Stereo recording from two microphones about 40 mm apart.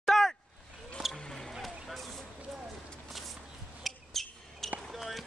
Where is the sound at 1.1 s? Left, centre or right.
Centre.